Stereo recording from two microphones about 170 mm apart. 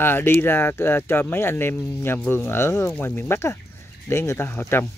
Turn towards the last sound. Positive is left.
turn(degrees=10)  # may be behind; listen again after turning